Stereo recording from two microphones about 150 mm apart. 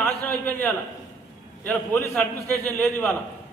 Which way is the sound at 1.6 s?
15° left (ahead or behind).